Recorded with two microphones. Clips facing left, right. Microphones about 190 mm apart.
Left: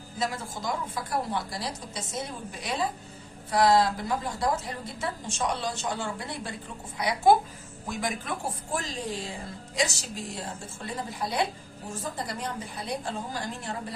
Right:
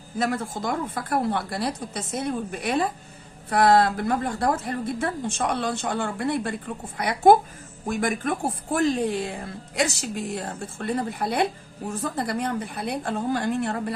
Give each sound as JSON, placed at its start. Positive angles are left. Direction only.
{"t": 0.2, "sound": "a woman's voice", "side_deg": -55}